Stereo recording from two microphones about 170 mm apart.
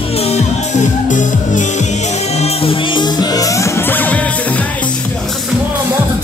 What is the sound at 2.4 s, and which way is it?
Music, 30° left (ahead or behind).